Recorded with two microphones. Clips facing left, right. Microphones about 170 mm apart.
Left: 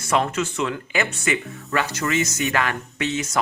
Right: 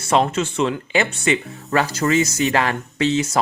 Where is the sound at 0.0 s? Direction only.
25° right (ahead or behind).